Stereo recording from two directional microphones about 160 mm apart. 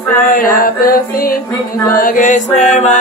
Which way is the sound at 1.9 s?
60° left (ahead or behind).